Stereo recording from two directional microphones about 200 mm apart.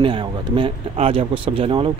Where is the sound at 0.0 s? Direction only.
25° right (ahead or behind).